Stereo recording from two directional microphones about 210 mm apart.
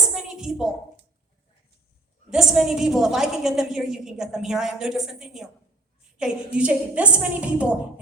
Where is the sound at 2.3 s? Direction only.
Centre (ahead or behind).